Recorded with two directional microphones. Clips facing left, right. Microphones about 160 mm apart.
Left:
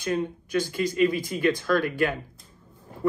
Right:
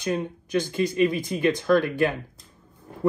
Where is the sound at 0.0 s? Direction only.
20° right (ahead or behind).